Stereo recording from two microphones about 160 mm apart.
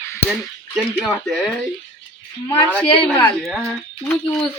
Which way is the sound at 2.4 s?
30° left (ahead or behind).